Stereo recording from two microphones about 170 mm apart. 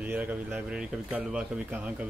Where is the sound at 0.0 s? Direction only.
10° right (ahead or behind).